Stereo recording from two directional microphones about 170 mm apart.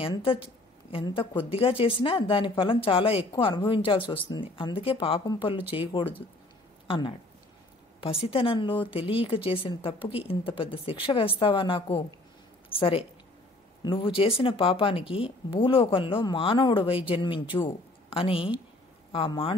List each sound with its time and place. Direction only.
0.0 s a woman's voice: 30° left (ahead or behind)